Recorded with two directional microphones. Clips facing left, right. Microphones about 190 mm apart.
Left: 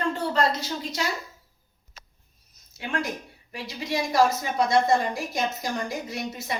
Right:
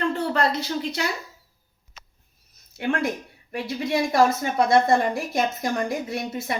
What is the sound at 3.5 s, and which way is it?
A woman's voice, 55° right (ahead or behind).